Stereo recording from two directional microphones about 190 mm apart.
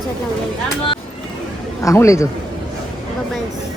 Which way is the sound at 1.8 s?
15° left (ahead or behind).